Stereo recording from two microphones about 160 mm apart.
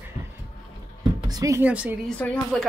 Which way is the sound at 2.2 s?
10° left (ahead or behind).